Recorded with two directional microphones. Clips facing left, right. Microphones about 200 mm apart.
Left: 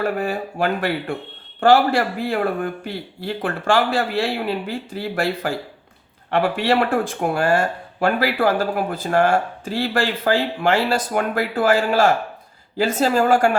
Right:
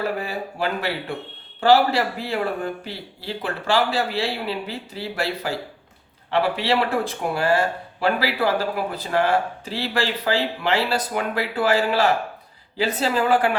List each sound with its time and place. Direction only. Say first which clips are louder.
0.0 s speech: left 4 dB; 50° left (ahead or behind)